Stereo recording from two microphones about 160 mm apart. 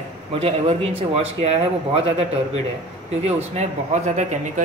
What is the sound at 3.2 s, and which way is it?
Speech, 45° right (ahead or behind).